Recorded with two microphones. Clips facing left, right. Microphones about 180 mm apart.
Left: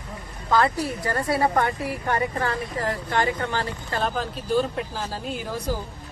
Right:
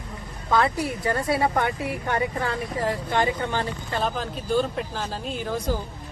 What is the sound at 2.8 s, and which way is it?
Speech, 20° right (ahead or behind).